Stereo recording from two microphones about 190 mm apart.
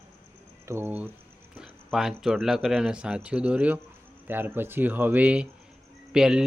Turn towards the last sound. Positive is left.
turn(degrees=-5)  # may be behind; listen again after turning